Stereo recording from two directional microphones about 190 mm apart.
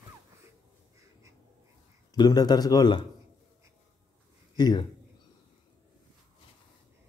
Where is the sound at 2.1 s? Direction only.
20° left (ahead or behind).